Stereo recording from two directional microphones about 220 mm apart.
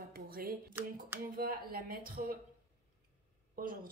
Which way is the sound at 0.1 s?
40° right (ahead or behind).